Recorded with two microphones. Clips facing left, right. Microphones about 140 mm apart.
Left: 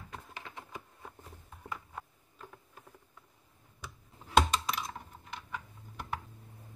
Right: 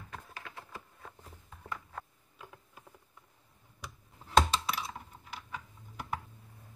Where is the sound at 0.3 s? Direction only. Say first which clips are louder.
Left 1 dB; 20° left (ahead or behind).